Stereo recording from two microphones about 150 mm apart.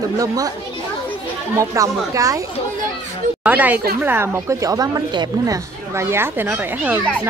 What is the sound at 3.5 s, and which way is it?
A woman's voice, 10° right (ahead or behind).